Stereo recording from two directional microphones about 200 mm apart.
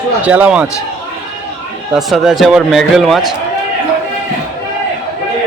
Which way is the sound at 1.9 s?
Centre (ahead or behind).